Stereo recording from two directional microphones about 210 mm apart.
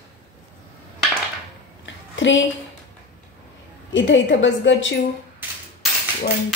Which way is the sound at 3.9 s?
60° left (ahead or behind).